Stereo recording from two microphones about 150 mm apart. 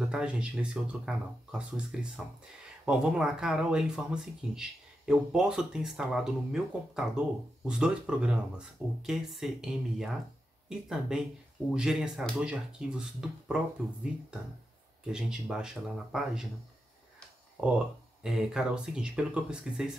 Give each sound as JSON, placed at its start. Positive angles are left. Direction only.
{"t": 0.1, "sound": "speech", "side_deg": -5}
{"t": 15.1, "sound": "speech", "side_deg": -5}
{"t": 17.6, "sound": "speech", "side_deg": -5}